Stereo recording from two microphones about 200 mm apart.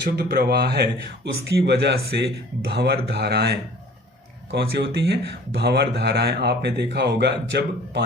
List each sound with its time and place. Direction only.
0.0 s speech: 55° right (ahead or behind)
4.5 s speech: 60° right (ahead or behind)